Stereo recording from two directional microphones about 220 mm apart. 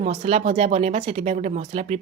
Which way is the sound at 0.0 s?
30° right (ahead or behind).